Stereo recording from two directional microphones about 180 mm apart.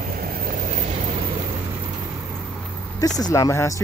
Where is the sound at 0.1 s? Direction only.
50° right (ahead or behind).